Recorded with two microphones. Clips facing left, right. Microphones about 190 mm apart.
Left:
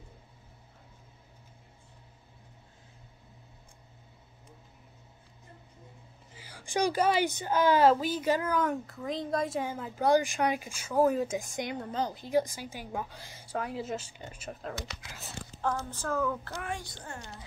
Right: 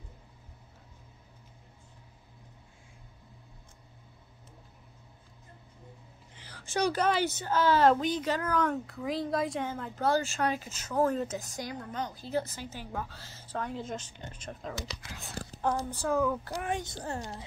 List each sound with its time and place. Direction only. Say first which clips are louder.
6.3 s a woman's voice: left 1 dB; 10° left (ahead or behind)
11.5 s a woman's voice: left 3 dB; 25° left (ahead or behind)
12.3 s a woman's voice: left 5 dB; 15° left (ahead or behind)
15.8 s a woman's voice: right 3 dB; 15° right (ahead or behind)
17.0 s speech: right 7 dB; 35° right (ahead or behind)